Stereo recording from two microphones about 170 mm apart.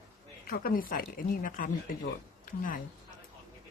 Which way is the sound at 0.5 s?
60° left (ahead or behind).